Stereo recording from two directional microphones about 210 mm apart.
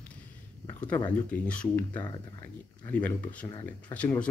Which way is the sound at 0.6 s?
10° left (ahead or behind).